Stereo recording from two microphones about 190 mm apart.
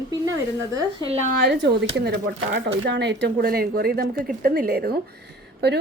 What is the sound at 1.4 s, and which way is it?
A woman's voice, 60° right (ahead or behind).